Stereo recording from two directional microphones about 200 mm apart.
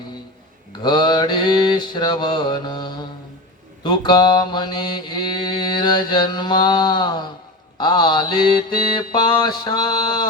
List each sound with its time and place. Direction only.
0.8 s mantra: 20° left (ahead or behind)